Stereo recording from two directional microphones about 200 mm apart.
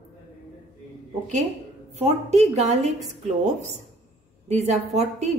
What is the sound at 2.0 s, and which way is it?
Speech, 30° right (ahead or behind).